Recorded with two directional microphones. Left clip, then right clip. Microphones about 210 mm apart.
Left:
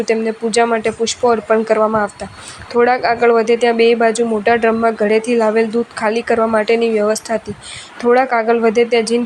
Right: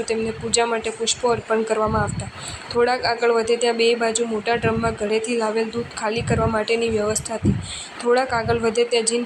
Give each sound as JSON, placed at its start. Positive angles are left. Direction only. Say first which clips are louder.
{"t": 0.0, "sound": "speech", "louder": "left 7 dB", "side_deg": 40}